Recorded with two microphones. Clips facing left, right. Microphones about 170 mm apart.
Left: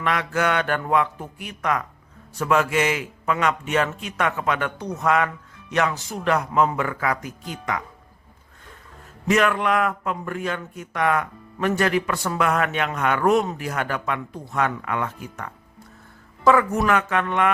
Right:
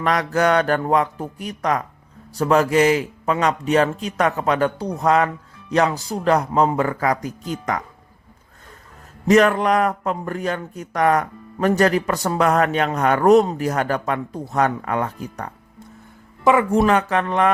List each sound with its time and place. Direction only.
0.0 s speech: 40° right (ahead or behind)
9.2 s speech: 40° right (ahead or behind)
16.4 s speech: 20° right (ahead or behind)
16.6 s speech: 30° right (ahead or behind)